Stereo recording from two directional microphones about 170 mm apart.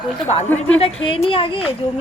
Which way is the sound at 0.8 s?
30° left (ahead or behind).